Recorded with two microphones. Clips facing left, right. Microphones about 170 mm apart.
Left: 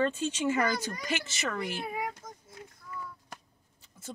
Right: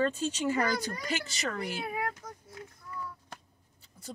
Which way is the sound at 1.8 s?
15° left (ahead or behind).